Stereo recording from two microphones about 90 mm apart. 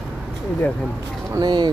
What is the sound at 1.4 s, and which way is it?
Speech, 55° right (ahead or behind).